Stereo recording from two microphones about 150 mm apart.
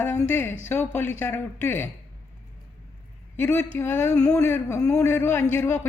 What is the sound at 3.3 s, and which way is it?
A man's voice, 15° left (ahead or behind).